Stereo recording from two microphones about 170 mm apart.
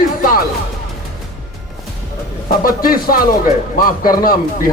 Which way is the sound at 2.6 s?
60° left (ahead or behind).